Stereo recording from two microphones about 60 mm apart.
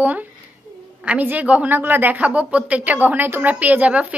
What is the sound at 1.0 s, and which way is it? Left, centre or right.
Speech, right.